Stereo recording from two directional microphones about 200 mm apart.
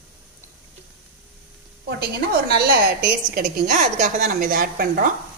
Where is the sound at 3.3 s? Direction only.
40° right (ahead or behind).